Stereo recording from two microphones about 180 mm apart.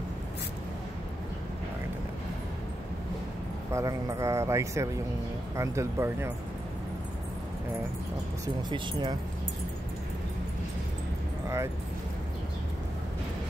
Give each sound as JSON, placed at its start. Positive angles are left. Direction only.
{"t": 3.7, "sound": "speech", "side_deg": -15}
{"t": 8.6, "sound": "speech", "side_deg": -25}